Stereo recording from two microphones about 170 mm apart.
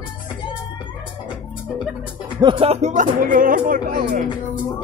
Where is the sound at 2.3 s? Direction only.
25° right (ahead or behind); by 4.3 s 50° right (ahead or behind).